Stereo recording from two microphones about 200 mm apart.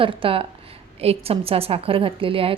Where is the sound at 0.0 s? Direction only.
25° right (ahead or behind).